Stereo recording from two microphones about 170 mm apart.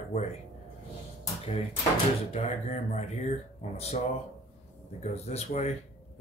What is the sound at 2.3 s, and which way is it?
A man's voice, 40° left (ahead or behind).